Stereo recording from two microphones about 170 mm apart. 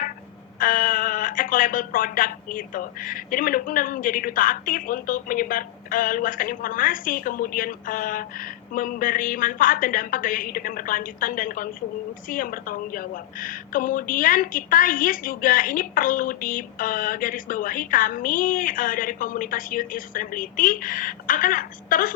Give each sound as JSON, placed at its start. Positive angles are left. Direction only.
{"t": 0.6, "sound": "speech", "side_deg": 55}